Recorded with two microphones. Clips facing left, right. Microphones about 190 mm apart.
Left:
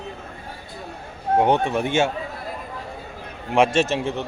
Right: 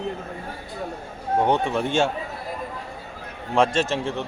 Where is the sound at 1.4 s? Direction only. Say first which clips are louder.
Left 2 dB; 15° left (ahead or behind).